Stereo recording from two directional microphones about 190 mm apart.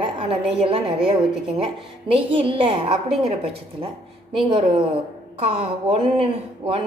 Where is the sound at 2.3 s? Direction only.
25° right (ahead or behind).